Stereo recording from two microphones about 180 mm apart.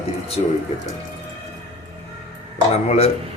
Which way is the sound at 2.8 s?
35° left (ahead or behind).